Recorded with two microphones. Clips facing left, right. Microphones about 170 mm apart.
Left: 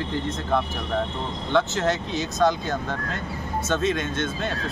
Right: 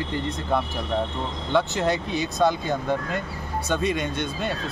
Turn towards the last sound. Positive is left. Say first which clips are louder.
# even
turn(degrees=-15)  # may be behind; listen again after turning